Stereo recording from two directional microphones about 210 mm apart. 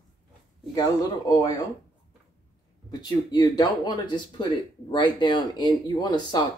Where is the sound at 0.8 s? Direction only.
15° left (ahead or behind).